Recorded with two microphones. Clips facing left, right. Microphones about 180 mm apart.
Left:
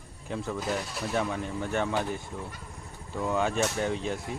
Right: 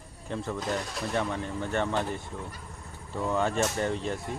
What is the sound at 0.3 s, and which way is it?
Speech, 5° left (ahead or behind).